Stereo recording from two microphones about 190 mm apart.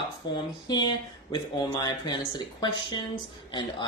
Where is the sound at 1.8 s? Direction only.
20° left (ahead or behind).